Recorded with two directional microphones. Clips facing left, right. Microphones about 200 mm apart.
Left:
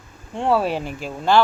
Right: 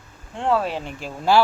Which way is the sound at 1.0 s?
5° right (ahead or behind).